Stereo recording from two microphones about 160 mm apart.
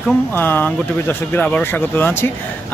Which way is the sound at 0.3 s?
10° left (ahead or behind).